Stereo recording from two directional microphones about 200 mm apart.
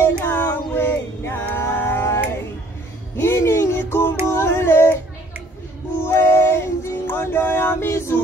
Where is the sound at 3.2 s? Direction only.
15° left (ahead or behind).